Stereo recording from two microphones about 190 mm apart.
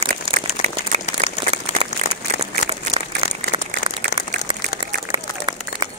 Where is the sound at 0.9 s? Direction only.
35° right (ahead or behind).